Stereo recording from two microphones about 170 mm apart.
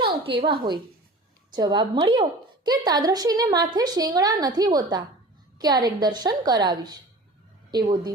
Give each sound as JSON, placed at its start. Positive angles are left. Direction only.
{"t": 0.0, "sound": "a woman's voice", "side_deg": -30}